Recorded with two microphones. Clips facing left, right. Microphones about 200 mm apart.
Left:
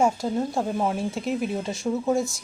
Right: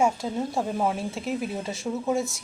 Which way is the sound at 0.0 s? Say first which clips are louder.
Left 2 dB; 5° right (ahead or behind).